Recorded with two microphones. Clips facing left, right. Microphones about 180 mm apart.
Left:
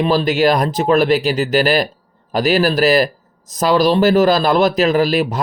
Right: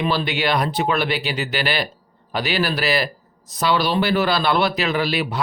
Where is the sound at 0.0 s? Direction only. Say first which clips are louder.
Left 8 dB; 40° left (ahead or behind).